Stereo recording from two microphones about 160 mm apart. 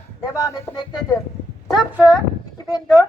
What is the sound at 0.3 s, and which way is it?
Speech, 20° left (ahead or behind).